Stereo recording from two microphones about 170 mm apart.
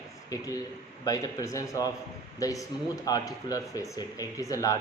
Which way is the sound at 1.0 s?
20° left (ahead or behind).